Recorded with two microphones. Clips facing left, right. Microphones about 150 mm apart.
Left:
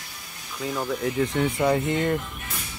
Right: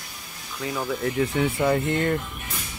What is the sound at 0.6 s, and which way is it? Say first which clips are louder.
Speech: even; centre (ahead or behind).